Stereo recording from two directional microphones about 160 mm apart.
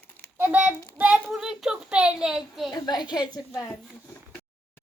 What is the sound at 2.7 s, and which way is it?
Speech, 25° left (ahead or behind).